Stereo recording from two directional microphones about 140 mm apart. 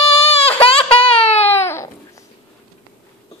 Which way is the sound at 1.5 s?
20° left (ahead or behind).